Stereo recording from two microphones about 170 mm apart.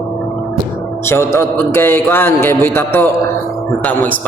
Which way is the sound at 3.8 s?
10° left (ahead or behind).